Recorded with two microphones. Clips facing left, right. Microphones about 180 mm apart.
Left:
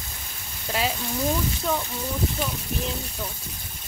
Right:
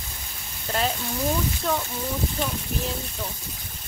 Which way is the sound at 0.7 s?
5° left (ahead or behind).